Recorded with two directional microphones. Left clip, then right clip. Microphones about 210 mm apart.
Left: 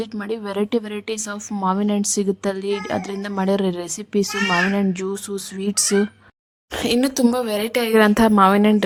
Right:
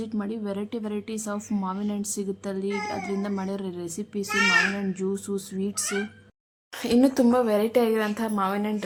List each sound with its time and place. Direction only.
0.0 s a woman's voice: 40° left (ahead or behind)
7.2 s speech: centre (ahead or behind)
7.6 s a woman's voice: 45° left (ahead or behind)